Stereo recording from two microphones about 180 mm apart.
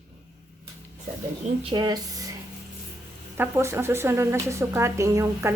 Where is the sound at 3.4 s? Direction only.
15° right (ahead or behind).